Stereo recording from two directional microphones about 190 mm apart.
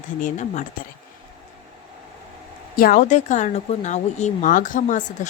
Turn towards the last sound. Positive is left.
turn(degrees=40)  # may be behind; listen again after turning